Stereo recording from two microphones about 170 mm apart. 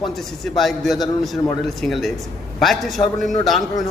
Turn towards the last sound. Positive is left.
turn(degrees=0)  # may be behind; listen again after turning